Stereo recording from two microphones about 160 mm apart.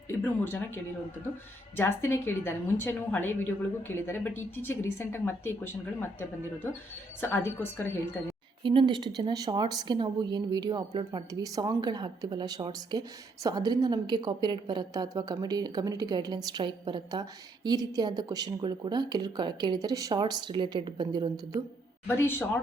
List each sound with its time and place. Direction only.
0.1 s a woman's voice: 15° left (ahead or behind)
8.6 s a woman's voice: 30° right (ahead or behind)
22.0 s a woman's voice: 15° left (ahead or behind)